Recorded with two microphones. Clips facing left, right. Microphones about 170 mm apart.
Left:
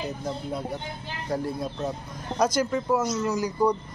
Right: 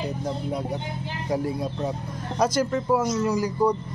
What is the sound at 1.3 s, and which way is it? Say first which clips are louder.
Speech: right 2 dB; 15° right (ahead or behind).